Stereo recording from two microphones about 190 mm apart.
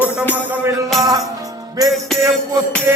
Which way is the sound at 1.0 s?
20° right (ahead or behind).